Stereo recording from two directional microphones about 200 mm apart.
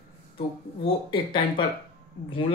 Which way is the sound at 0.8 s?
25° left (ahead or behind).